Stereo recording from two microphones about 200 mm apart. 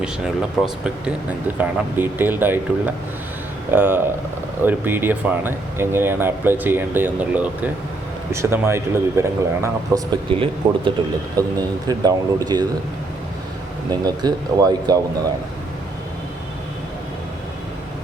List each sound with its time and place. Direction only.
0.0 s speech: 5° right (ahead or behind)
10.2 s speech: 25° right (ahead or behind)
13.9 s speech: 20° right (ahead or behind)